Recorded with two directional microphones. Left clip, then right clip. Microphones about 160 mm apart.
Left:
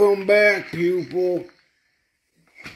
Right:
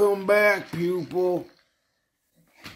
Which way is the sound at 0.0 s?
Centre (ahead or behind).